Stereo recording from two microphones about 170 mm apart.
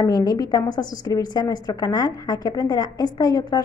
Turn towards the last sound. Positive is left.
turn(degrees=20)  # may be behind; listen again after turning